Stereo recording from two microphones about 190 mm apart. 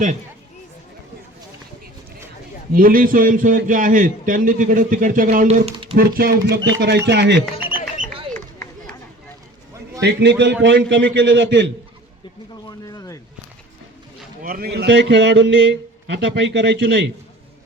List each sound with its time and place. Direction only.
2.7 s a man's voice: 45° right (ahead or behind)
5.6 s speech: 30° right (ahead or behind)
6.0 s a man's voice: 50° right (ahead or behind)
6.6 s a man's voice: 75° right (ahead or behind)
10.0 s a man's voice: 65° right (ahead or behind)
12.6 s speech: 20° left (ahead or behind)
14.4 s a man's voice: 50° right (ahead or behind)